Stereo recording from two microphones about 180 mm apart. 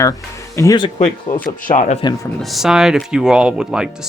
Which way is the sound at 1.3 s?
50° left (ahead or behind).